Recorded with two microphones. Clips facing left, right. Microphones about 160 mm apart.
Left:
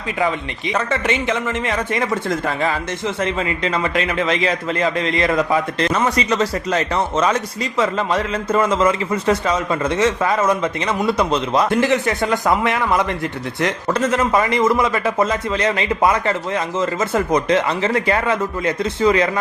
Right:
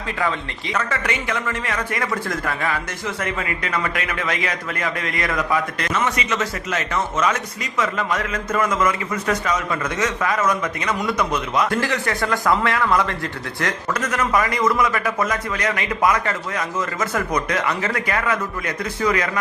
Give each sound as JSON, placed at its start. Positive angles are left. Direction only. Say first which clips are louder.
{"t": 0.2, "sound": "a man's voice", "louder": "left 4 dB", "side_deg": 20}
{"t": 11.7, "sound": "a man's voice", "louder": "left 5 dB", "side_deg": 20}